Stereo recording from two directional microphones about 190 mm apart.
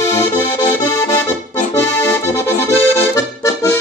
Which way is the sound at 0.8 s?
15° left (ahead or behind).